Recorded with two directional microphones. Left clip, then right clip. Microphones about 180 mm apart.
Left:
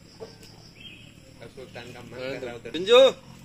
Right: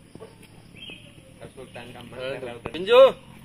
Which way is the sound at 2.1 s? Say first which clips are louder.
Right 1 dB; 40° left (ahead or behind).